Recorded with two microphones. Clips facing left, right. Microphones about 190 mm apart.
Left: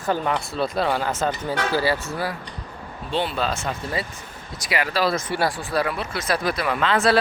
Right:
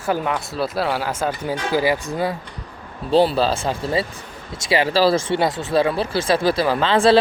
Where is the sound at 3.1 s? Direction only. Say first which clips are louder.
Right 8 dB; 35° right (ahead or behind).